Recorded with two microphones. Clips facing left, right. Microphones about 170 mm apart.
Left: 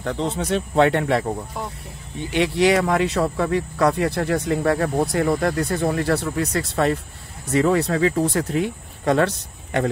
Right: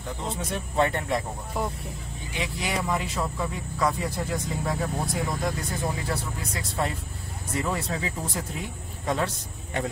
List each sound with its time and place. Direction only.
0.0 s speech: 75° left (ahead or behind)
2.3 s speech: 75° left (ahead or behind)